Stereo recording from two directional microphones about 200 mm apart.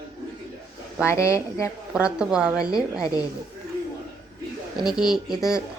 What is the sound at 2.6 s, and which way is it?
Speech, 20° left (ahead or behind).